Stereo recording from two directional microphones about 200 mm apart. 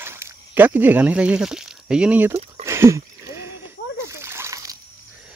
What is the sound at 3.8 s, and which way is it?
Splash, 50° left (ahead or behind).